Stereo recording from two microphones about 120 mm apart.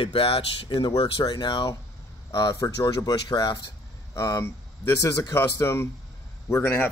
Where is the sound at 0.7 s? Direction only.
35° left (ahead or behind); by 5.9 s 20° left (ahead or behind).